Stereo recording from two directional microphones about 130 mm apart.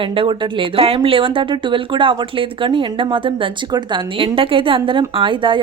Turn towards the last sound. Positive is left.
turn(degrees=-40)  # may be behind; listen again after turning